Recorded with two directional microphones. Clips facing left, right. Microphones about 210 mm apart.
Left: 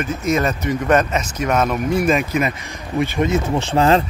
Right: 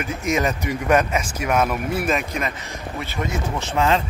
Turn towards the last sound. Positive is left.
turn(degrees=35)  # may be behind; listen again after turning